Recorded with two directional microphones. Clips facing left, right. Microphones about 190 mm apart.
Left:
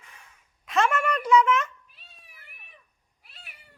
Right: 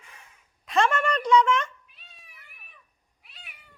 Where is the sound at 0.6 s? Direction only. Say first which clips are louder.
Right 1 dB; centre (ahead or behind).